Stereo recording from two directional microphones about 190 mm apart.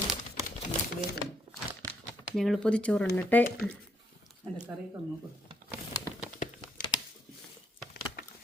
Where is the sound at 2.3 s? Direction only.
Centre (ahead or behind).